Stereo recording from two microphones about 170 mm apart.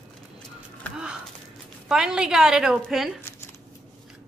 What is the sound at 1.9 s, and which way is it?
A woman's voice, 5° right (ahead or behind).